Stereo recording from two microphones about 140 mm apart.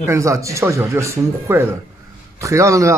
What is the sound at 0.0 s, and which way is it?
A man's voice, 20° right (ahead or behind).